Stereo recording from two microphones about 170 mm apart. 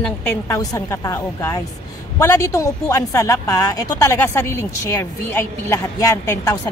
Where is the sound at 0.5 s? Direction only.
20° left (ahead or behind).